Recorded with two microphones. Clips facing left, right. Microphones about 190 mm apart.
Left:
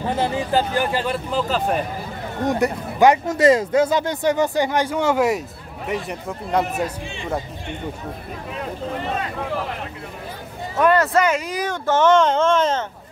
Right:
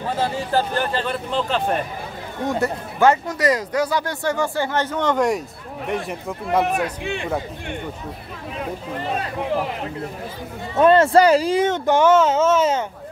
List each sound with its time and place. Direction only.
0.2 s speech: 15° left (ahead or behind)
2.4 s speech: 15° left (ahead or behind)
3.3 s speech: 25° left (ahead or behind); by 6.1 s centre (ahead or behind)
6.6 s speech: 65° right (ahead or behind)
10.8 s speech: 25° right (ahead or behind); by 12.8 s 10° right (ahead or behind)